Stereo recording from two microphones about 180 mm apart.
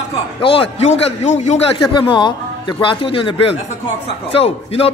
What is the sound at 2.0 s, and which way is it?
A man's voice, 25° left (ahead or behind).